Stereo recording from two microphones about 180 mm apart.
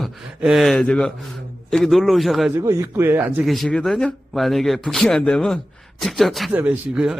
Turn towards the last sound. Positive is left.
turn(degrees=-5)  # may be behind; listen again after turning